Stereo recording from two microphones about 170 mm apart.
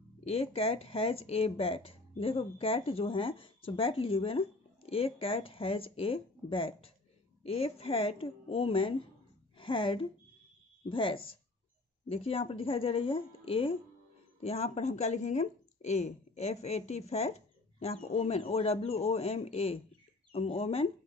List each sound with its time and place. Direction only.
0.2 s a woman's voice: 35° left (ahead or behind)